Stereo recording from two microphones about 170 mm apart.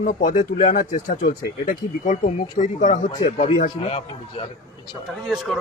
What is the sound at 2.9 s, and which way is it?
Speech, 30° left (ahead or behind).